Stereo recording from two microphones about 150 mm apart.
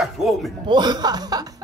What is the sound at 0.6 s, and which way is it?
Speech, 30° right (ahead or behind).